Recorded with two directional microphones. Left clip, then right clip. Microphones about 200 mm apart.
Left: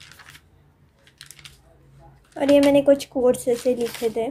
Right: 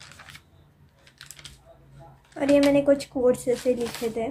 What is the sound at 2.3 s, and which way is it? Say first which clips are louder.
Speech: left 4 dB; 15° left (ahead or behind).